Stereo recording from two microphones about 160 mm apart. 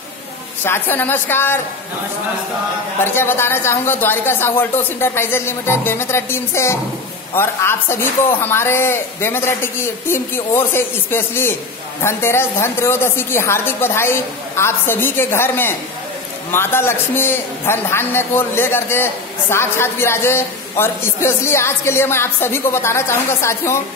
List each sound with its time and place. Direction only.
0.7 s a woman's voice: 10° left (ahead or behind)
3.0 s a woman's voice: 15° left (ahead or behind)